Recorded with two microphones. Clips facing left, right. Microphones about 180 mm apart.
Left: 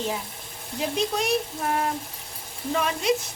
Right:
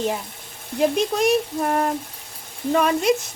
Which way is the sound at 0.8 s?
45° right (ahead or behind).